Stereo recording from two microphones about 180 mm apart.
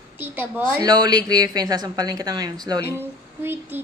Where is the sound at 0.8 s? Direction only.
25° right (ahead or behind).